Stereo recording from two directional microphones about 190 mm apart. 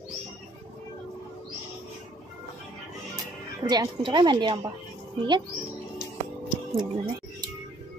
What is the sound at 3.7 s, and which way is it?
Speech, 25° right (ahead or behind).